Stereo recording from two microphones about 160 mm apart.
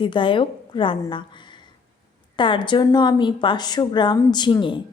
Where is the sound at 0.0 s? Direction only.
30° left (ahead or behind).